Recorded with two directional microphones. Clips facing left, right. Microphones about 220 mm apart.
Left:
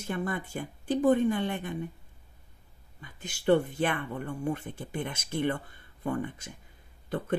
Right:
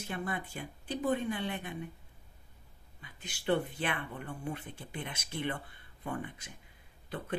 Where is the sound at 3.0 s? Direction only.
45° left (ahead or behind).